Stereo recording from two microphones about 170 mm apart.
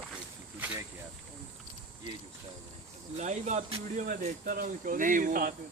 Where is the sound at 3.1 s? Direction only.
45° right (ahead or behind).